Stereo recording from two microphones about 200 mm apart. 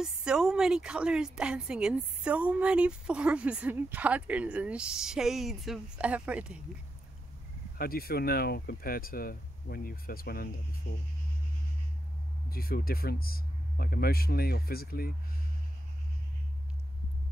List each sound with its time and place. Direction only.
0.0 s a woman's voice: 5° right (ahead or behind)
7.7 s speech: 50° left (ahead or behind)
12.4 s speech: 50° left (ahead or behind)